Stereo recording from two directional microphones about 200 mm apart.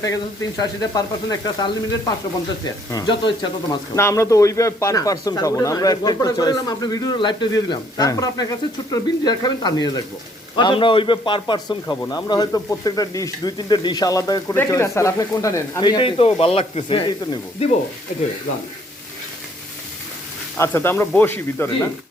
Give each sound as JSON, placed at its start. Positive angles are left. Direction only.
{"t": 0.6, "sound": "speech", "side_deg": 20}
{"t": 18.1, "sound": "speech", "side_deg": 35}
{"t": 20.6, "sound": "speech", "side_deg": 10}